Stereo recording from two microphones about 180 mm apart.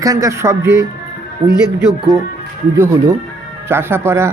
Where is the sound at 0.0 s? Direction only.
20° right (ahead or behind).